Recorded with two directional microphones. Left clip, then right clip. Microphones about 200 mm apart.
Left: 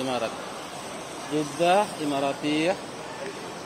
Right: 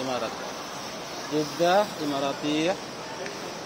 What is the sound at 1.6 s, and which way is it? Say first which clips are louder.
Mantra: left 1 dB; 15° left (ahead or behind).